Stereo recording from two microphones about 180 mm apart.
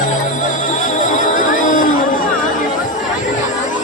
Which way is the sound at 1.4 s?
50° left (ahead or behind).